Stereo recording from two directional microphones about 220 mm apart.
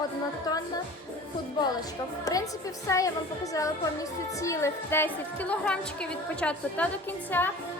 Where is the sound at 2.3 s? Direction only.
15° left (ahead or behind).